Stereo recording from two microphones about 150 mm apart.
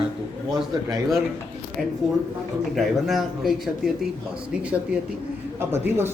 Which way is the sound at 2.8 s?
Centre (ahead or behind).